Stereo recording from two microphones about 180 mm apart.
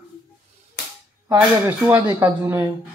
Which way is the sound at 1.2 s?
15° right (ahead or behind).